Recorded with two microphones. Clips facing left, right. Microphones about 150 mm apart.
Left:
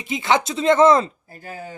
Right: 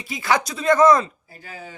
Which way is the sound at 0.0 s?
20° left (ahead or behind).